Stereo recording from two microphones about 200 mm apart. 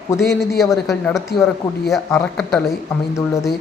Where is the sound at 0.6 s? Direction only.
Centre (ahead or behind).